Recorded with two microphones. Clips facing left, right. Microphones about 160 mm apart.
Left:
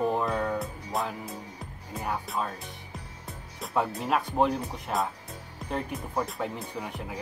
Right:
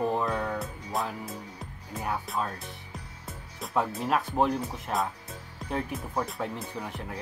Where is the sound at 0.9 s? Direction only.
Centre (ahead or behind).